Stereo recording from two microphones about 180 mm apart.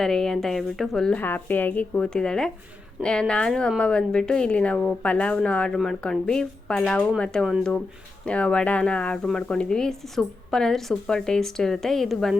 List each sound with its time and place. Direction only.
0.0 s a woman's voice: centre (ahead or behind)